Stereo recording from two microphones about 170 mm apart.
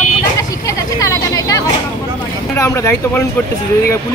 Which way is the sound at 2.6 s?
15° left (ahead or behind).